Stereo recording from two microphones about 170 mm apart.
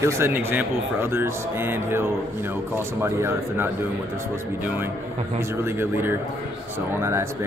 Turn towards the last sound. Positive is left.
turn(degrees=-15)  # may be behind; listen again after turning